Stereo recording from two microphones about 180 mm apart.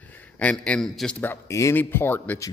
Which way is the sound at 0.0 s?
10° left (ahead or behind).